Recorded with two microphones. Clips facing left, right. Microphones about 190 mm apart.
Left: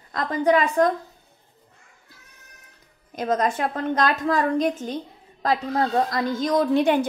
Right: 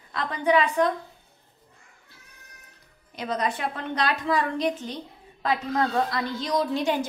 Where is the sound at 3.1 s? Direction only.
45° left (ahead or behind).